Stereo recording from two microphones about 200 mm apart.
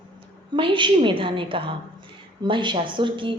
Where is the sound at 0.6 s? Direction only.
25° right (ahead or behind).